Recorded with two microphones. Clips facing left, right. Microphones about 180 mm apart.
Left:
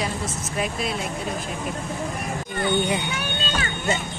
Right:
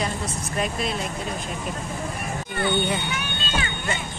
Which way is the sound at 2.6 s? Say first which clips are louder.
Left 1 dB; 15° left (ahead or behind).